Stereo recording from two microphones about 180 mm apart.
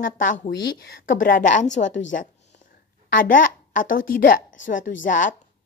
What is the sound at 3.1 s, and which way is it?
Speech, 50° left (ahead or behind).